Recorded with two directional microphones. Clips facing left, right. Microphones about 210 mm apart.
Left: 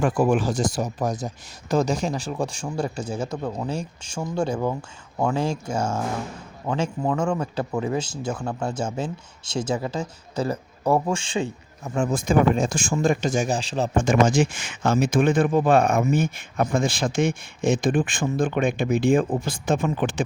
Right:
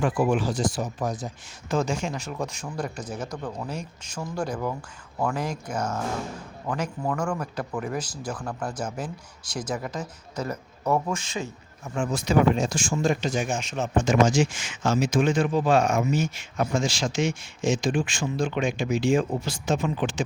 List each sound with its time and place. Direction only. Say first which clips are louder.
0.0 s speech: left 3 dB; 45° left (ahead or behind); by 11.5 s 30° left (ahead or behind)
12.1 s speech: left 1 dB; 50° left (ahead or behind); by 13.9 s 35° left (ahead or behind)
13.9 s speech: left 1 dB; 55° left (ahead or behind)